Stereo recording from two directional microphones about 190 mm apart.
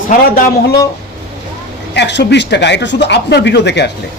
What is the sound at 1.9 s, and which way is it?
Speech, 65° left (ahead or behind).